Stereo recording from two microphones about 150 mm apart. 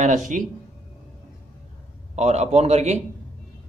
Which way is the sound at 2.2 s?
45° right (ahead or behind).